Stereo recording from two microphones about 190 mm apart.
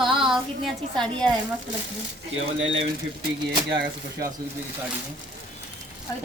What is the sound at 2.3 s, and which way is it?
Speech, 90° right.